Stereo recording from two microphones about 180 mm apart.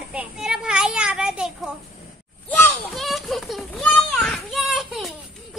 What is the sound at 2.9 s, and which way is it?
Children playing, centre (ahead or behind).